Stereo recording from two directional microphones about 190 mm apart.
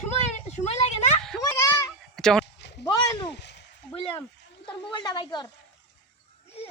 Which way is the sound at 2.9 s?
20° left (ahead or behind).